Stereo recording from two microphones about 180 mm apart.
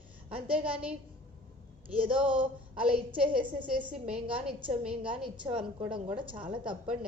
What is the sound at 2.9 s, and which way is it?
A woman's voice, 30° right (ahead or behind).